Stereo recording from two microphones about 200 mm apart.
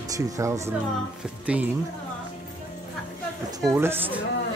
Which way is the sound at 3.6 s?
10° right (ahead or behind).